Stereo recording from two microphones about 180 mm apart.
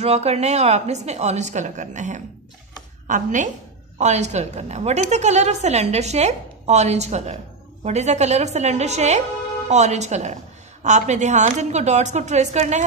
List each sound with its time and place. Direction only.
0.0 s a woman's voice: 35° right (ahead or behind)